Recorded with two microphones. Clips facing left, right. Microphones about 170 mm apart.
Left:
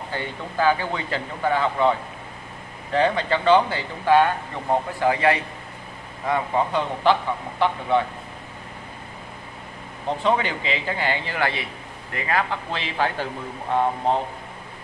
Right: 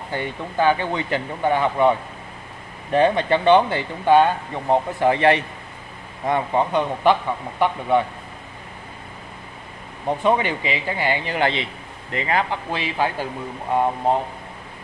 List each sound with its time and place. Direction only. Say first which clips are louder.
0.1 s a man's voice: right 4 dB; 20° right (ahead or behind)
10.0 s a man's voice: right 3 dB; 15° right (ahead or behind)